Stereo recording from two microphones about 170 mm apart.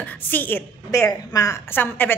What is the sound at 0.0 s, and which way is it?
A woman's voice, 10° left (ahead or behind).